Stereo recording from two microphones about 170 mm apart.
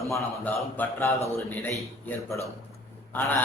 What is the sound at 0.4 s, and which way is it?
A man's voice, 10° left (ahead or behind).